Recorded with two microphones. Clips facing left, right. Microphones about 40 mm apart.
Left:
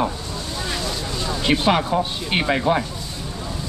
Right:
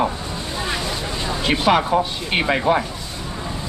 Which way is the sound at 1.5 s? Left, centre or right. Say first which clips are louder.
Right 2 dB; centre.